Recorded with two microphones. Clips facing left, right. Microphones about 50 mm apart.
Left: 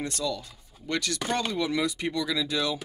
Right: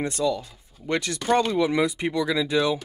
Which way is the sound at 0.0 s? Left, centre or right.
Right.